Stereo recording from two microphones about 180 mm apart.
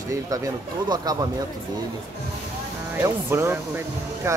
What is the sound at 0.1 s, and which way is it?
Speech, 20° right (ahead or behind).